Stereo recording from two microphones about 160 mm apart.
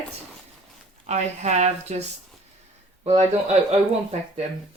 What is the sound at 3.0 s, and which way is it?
Speech, 45° right (ahead or behind).